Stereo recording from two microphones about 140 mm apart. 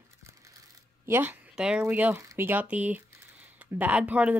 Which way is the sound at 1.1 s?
15° right (ahead or behind).